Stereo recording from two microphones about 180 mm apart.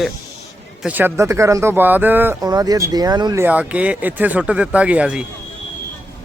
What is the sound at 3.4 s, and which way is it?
Speech, 10° right (ahead or behind).